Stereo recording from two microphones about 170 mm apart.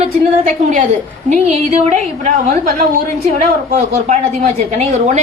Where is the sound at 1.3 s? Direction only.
40° right (ahead or behind).